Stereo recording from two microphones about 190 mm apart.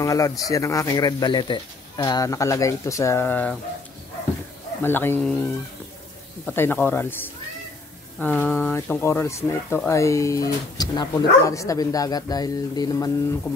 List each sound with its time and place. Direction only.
0.0 s speech: 15° left (ahead or behind)
4.8 s speech: 10° left (ahead or behind)
6.4 s speech: 10° left (ahead or behind)
8.2 s speech: 10° left (ahead or behind)